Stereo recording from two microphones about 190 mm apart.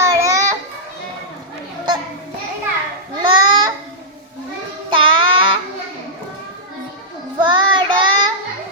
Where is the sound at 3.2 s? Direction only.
25° right (ahead or behind).